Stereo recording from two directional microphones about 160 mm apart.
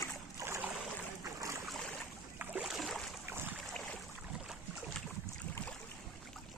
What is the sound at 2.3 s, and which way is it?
Boat, 5° right (ahead or behind).